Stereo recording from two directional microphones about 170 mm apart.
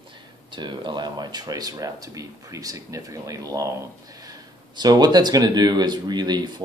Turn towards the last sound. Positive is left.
turn(degrees=-25)  # may be behind; listen again after turning